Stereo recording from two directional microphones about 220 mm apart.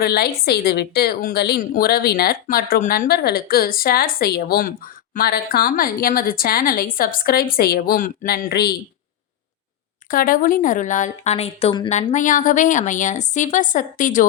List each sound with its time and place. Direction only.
0.0 s a woman's voice: 45° left (ahead or behind)
10.1 s a woman's voice: 40° left (ahead or behind)